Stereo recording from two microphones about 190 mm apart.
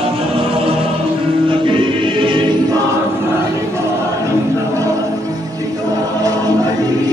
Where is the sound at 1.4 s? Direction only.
25° right (ahead or behind).